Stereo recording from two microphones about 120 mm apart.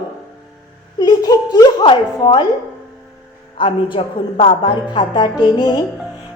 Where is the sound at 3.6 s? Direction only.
45° left (ahead or behind).